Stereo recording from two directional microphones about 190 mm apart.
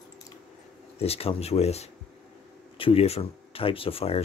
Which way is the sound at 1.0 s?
30° left (ahead or behind).